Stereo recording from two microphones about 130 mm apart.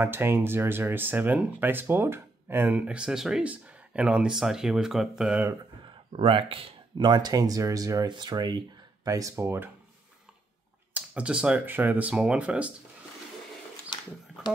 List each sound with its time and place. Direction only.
0.0 s speech: 15° right (ahead or behind)
6.1 s speech: 40° right (ahead or behind); by 9.7 s 20° right (ahead or behind)
10.9 s speech: 10° right (ahead or behind)